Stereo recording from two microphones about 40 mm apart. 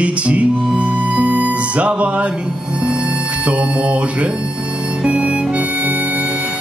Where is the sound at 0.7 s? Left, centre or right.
Right.